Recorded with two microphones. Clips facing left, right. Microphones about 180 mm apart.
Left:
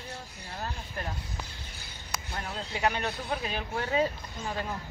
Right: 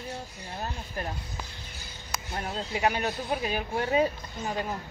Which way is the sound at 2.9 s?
15° right (ahead or behind).